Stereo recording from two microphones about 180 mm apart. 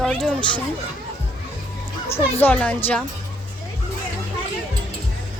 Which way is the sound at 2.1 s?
10° left (ahead or behind).